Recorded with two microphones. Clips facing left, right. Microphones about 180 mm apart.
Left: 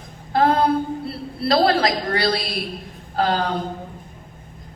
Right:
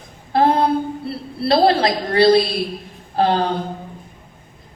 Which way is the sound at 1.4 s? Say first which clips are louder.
Right 2 dB; 25° right (ahead or behind).